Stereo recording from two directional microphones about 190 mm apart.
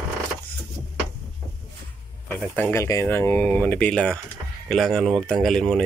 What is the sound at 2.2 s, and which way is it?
Speech, 10° left (ahead or behind).